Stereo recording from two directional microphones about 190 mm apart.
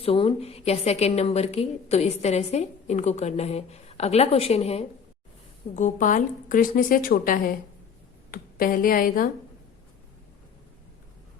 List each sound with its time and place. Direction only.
0.0 s a woman's voice: 30° left (ahead or behind); by 9.3 s 45° left (ahead or behind)